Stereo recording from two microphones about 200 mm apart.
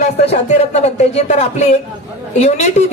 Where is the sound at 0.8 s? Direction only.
35° left (ahead or behind).